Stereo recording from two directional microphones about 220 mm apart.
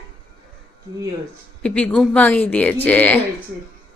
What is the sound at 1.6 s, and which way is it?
Speech, 5° left (ahead or behind).